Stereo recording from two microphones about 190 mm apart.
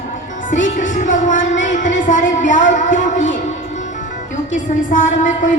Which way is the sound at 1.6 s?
40° left (ahead or behind).